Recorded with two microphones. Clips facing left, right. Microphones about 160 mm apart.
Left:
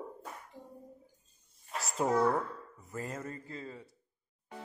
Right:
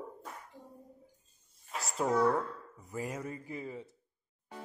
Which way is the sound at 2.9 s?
10° right (ahead or behind).